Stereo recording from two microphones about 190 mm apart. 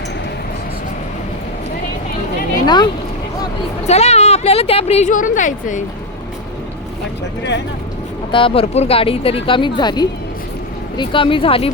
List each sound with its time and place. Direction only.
2.6 s speech: 20° left (ahead or behind)
3.8 s a woman's voice: 35° left (ahead or behind)
8.3 s speech: 25° left (ahead or behind)